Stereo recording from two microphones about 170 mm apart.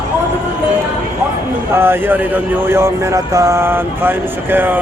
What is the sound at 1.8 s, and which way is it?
Speech, 10° right (ahead or behind).